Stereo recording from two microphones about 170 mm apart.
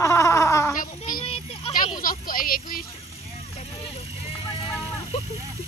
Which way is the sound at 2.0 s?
55° left (ahead or behind).